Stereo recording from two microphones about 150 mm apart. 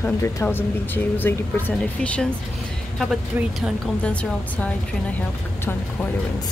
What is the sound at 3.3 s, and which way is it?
Speech, 5° right (ahead or behind).